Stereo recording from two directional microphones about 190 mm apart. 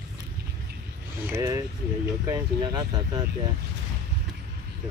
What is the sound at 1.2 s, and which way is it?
Speech, 15° right (ahead or behind).